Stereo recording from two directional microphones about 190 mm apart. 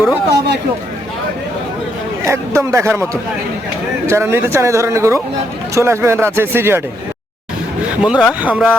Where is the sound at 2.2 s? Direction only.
15° right (ahead or behind).